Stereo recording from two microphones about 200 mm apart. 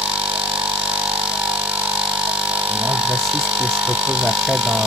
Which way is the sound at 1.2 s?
5° right (ahead or behind).